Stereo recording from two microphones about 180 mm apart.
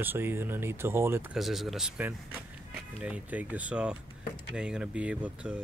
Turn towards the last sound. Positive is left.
turn(degrees=-5)  # may be behind; listen again after turning